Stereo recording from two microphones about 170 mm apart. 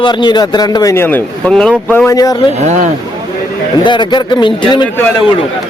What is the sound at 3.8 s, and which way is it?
A man's voice, 25° left (ahead or behind).